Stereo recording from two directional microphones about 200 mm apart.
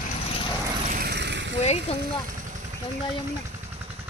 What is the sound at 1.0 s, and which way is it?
Vehicle, 60° right (ahead or behind).